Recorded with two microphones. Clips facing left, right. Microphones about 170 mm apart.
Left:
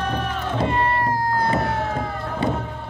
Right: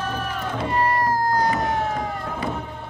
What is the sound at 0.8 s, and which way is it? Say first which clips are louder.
Cat: right 1 dB; 40° right (ahead or behind).